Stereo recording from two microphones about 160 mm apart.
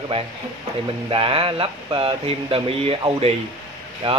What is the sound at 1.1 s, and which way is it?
Speech, 35° right (ahead or behind).